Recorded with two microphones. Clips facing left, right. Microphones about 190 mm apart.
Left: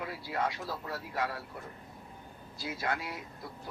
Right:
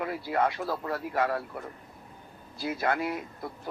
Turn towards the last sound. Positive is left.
turn(degrees=-55)  # may be behind; listen again after turning